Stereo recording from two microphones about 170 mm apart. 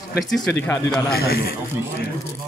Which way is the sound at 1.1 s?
65° left (ahead or behind).